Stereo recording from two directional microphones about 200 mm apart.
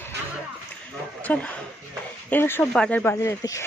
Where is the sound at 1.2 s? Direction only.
10° left (ahead or behind).